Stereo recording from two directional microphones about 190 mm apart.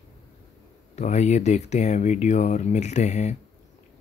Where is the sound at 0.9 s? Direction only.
40° left (ahead or behind).